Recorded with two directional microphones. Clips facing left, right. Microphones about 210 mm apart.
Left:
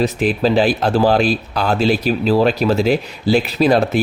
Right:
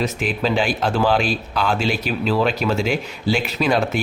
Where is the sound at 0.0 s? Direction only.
35° left (ahead or behind).